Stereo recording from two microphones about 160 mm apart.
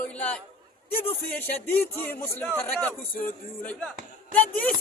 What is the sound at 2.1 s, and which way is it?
Speech, 15° left (ahead or behind).